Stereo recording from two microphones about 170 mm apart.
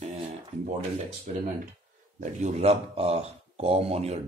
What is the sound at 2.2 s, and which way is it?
Speech, 40° right (ahead or behind).